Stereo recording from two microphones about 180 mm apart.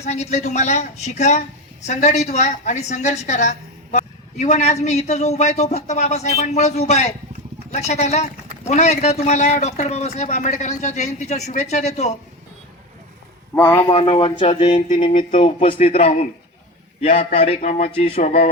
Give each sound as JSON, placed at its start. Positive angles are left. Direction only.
{"t": 0.0, "sound": "speech", "side_deg": 35}
{"t": 13.6, "sound": "speech", "side_deg": 15}
{"t": 13.9, "sound": "a man's voice", "side_deg": 30}